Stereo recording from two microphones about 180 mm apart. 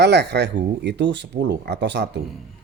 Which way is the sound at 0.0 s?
70° right (ahead or behind).